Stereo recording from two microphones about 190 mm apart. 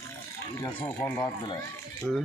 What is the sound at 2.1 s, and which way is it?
Speech, centre (ahead or behind).